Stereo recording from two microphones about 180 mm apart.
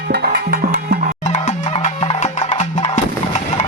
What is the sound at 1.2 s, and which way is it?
Music, 40° left (ahead or behind).